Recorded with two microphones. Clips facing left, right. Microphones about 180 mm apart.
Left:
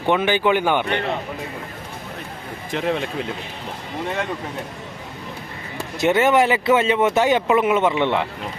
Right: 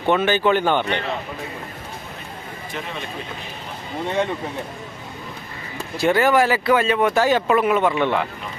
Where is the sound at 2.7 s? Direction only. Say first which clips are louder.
Left 9 dB; 90° left.